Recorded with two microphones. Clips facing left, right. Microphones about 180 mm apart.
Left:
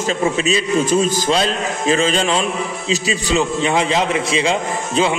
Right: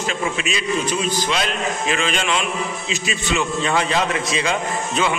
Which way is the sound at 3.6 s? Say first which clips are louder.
Left 3 dB; 20° left (ahead or behind).